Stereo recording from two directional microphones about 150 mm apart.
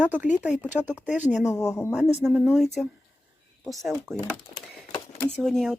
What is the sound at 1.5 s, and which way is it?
Speech, 20° left (ahead or behind).